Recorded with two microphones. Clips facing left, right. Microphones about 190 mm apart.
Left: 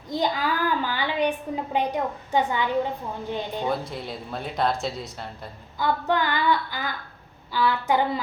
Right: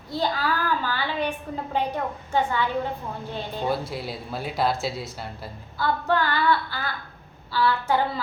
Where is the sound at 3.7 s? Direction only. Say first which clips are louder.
Right 1 dB; 5° right (ahead or behind).